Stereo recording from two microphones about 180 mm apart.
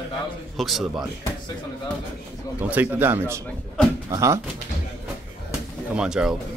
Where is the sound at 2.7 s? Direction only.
10° right (ahead or behind).